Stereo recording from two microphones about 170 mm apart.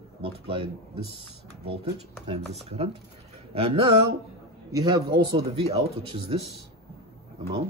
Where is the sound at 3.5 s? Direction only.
35° right (ahead or behind).